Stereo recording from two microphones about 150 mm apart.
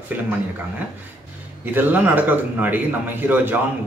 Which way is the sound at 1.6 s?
10° right (ahead or behind).